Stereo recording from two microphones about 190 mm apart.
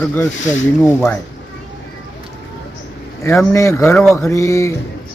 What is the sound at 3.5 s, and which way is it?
Speech, 15° left (ahead or behind).